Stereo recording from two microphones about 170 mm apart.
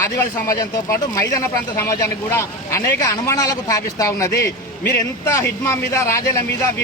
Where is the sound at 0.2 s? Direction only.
20° left (ahead or behind).